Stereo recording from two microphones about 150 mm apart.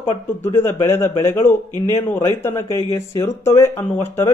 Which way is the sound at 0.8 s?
15° left (ahead or behind).